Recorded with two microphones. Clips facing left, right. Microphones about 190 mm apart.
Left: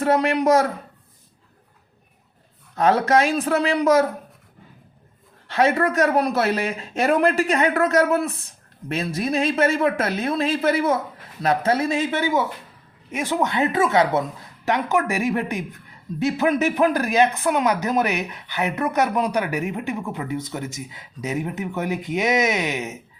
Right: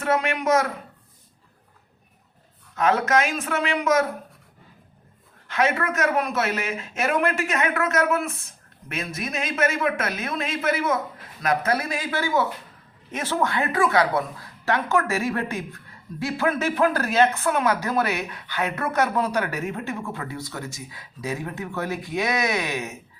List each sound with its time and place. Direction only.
0.0 s speech: 35° left (ahead or behind)
2.7 s speech: 35° left (ahead or behind)
5.5 s speech: 35° left (ahead or behind)